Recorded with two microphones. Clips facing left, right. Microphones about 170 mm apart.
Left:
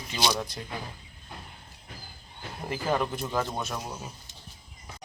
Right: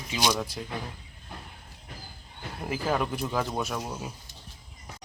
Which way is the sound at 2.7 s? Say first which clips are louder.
Even; 5° right (ahead or behind).